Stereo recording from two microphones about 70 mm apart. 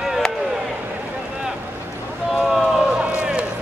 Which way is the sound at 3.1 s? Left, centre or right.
Centre.